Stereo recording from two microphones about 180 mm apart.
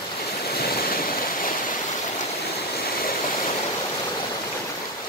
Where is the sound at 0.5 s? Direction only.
60° left (ahead or behind).